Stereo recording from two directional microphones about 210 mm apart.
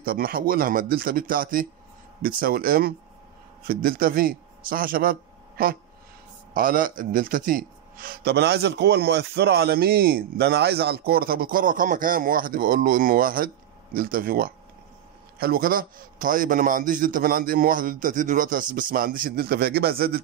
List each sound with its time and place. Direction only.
0.0 s a man's voice: 45° right (ahead or behind)